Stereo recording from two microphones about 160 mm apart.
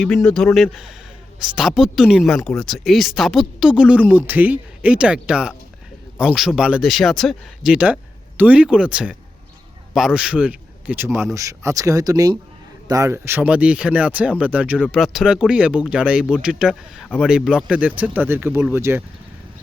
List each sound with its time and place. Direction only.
0.0 s a man's voice: 5° left (ahead or behind); by 19.0 s 15° right (ahead or behind)